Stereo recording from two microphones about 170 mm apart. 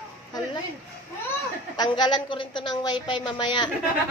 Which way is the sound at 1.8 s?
25° left (ahead or behind).